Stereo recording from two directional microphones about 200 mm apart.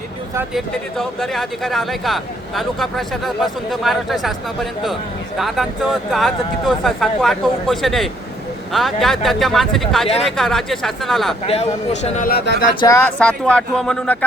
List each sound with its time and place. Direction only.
0.5 s speech: centre (ahead or behind)
11.4 s speech: 30° left (ahead or behind)
12.8 s speech: 10° left (ahead or behind)